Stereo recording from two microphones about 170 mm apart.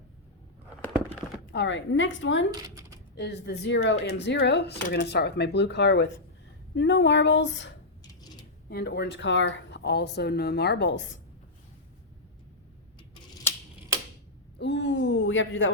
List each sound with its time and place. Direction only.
1.5 s speech: 90° left
2.5 s a sound: 20° right (ahead or behind)
3.2 s speech: 80° left
8.7 s speech: 75° left (ahead or behind)
14.6 s speech: 90° left